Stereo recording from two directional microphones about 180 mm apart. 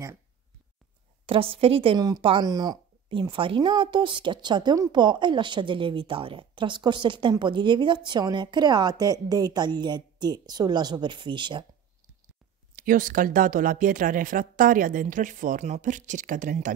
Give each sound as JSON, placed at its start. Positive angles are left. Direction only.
{"t": 1.2, "sound": "speech", "side_deg": -30}
{"t": 12.7, "sound": "speech", "side_deg": -50}